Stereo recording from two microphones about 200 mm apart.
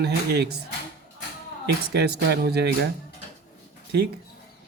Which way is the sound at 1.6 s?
55° right (ahead or behind).